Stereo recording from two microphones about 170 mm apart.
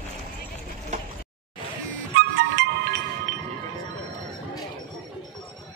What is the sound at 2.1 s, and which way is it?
Music, 90° right.